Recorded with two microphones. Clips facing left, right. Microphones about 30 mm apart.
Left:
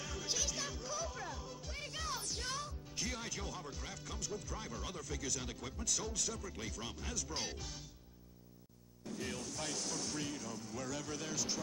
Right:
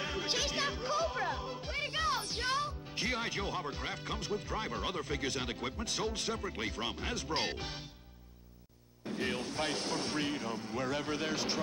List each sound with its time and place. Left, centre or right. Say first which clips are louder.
0.0 s music: right 6 dB; right
9.0 s speech: right 7 dB; right